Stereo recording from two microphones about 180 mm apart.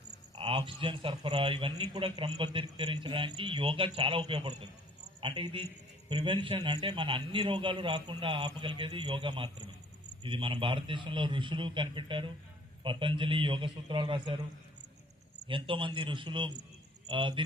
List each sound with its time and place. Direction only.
0.3 s speech: 25° right (ahead or behind)
15.4 s speech: 30° right (ahead or behind)